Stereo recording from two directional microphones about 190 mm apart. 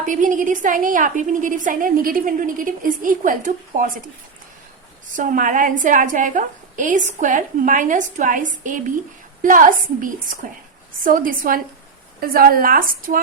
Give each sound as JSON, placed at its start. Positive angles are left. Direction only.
{"t": 0.0, "sound": "a woman's voice", "side_deg": -45}
{"t": 5.1, "sound": "a woman's voice", "side_deg": -45}